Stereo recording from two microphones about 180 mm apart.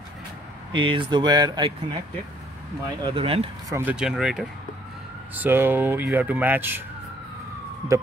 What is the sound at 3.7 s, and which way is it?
Speech, 5° right (ahead or behind).